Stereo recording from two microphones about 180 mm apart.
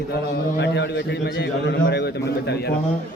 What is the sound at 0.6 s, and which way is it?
A man's voice, 75° left (ahead or behind).